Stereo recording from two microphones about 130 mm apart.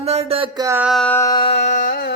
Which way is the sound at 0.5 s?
25° right (ahead or behind).